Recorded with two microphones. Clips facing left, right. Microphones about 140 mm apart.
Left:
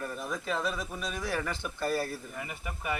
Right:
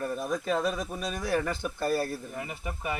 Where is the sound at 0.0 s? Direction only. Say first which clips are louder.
Right 5 dB; 35° right (ahead or behind).